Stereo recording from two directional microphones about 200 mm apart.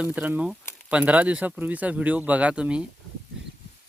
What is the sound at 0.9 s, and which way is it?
Speech, 5° right (ahead or behind).